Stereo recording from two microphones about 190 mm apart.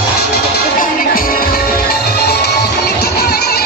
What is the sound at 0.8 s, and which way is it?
Music, 50° left (ahead or behind).